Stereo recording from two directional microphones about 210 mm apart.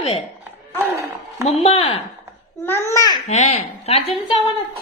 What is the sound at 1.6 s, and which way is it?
Speech, 25° left (ahead or behind).